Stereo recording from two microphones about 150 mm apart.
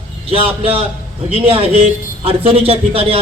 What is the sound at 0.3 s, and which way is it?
A man's voice, 40° right (ahead or behind).